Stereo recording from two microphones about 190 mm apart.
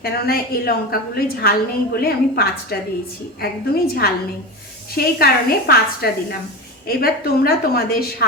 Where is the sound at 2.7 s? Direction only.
55° left (ahead or behind).